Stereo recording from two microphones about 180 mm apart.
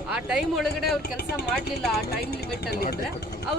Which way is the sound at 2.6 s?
60° left (ahead or behind).